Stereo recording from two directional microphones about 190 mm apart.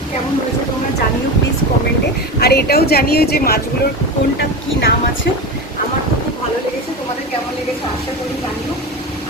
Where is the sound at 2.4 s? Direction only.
55° left (ahead or behind).